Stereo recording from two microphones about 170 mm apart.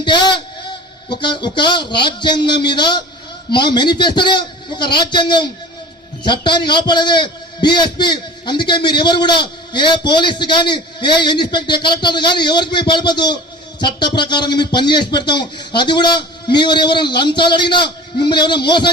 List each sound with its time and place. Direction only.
0.0 s a man's voice: 25° left (ahead or behind)